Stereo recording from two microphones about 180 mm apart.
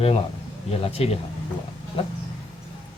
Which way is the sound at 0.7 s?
30° left (ahead or behind).